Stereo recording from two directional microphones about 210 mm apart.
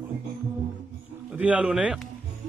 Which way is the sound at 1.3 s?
5° right (ahead or behind).